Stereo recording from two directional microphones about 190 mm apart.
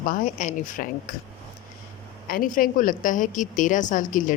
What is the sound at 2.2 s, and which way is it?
A woman's voice, 50° left (ahead or behind).